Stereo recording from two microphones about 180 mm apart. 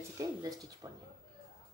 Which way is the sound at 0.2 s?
20° right (ahead or behind).